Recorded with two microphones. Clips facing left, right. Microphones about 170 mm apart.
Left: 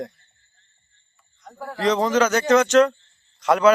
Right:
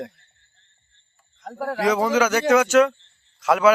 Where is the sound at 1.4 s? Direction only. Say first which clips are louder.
Right 7 dB; 90° right.